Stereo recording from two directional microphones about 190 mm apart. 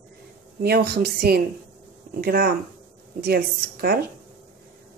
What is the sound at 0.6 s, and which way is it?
Speech, 60° right (ahead or behind).